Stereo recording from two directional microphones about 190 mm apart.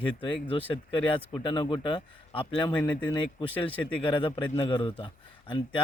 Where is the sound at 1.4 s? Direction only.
25° left (ahead or behind).